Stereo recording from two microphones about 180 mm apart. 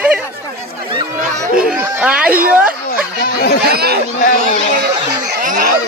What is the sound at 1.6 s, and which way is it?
Speech, 5° right (ahead or behind).